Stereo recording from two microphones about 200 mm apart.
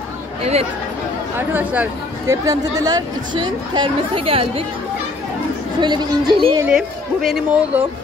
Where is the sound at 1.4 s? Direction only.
10° right (ahead or behind); by 4.6 s 25° right (ahead or behind).